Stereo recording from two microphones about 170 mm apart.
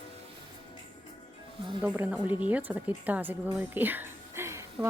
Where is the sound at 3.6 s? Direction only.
10° right (ahead or behind).